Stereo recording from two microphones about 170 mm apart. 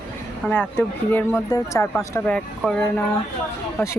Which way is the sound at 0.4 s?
10° left (ahead or behind).